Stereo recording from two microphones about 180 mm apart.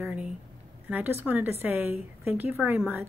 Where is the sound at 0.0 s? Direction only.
5° right (ahead or behind).